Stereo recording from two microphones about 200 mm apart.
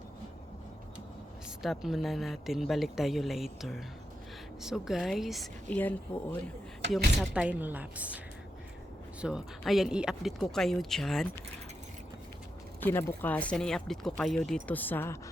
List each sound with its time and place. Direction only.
1.6 s speech: centre (ahead or behind)
6.1 s speech: 25° left (ahead or behind)
7.2 s speech: 5° right (ahead or behind)
9.2 s speech: centre (ahead or behind)
12.8 s speech: 10° left (ahead or behind)